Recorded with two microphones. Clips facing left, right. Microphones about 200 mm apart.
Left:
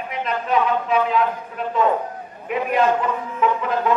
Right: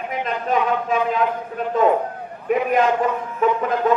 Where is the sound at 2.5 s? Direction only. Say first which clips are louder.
Right 4 dB; 45° right (ahead or behind).